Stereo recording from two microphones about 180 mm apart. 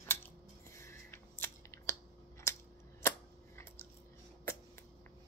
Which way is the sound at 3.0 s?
15° left (ahead or behind).